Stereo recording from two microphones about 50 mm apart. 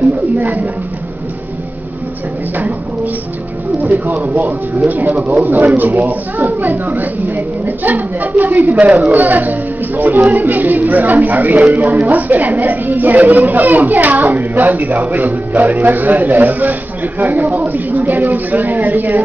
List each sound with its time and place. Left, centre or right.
0.4 s speech: right
3.7 s speech: right